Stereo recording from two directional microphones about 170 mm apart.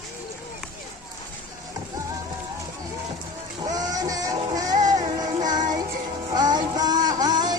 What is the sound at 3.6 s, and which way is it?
Music, 20° right (ahead or behind).